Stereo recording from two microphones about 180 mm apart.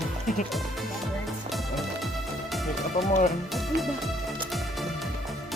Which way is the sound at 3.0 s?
40° left (ahead or behind).